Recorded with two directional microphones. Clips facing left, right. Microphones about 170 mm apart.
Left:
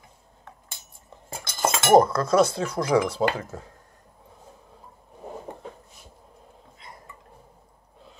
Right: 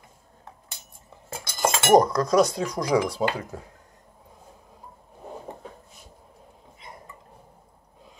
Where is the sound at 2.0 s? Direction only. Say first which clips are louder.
Even; 15° right (ahead or behind).